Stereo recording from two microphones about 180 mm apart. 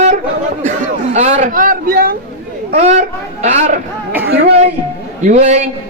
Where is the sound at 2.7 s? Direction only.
40° right (ahead or behind).